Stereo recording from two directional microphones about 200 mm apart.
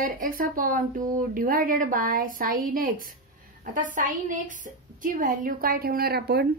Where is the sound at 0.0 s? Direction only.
45° right (ahead or behind).